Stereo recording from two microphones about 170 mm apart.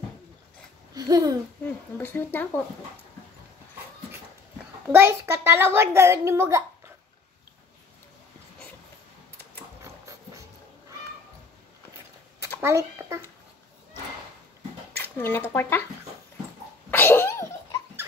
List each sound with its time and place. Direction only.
0.9 s babbling: 20° right (ahead or behind)
1.6 s speech: 10° left (ahead or behind)
4.9 s a child's voice: 15° right (ahead or behind)
12.5 s speech: 15° right (ahead or behind)
15.0 s speech: 10° left (ahead or behind)
16.9 s sneeze: 10° left (ahead or behind)